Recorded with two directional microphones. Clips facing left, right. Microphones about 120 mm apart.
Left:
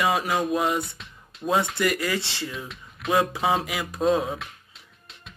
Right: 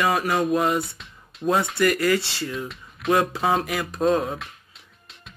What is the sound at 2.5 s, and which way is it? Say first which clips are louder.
Speech: right 5 dB; centre (ahead or behind).